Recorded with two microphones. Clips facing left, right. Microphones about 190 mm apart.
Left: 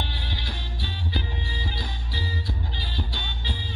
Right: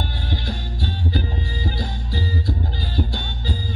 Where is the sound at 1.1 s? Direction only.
50° right (ahead or behind).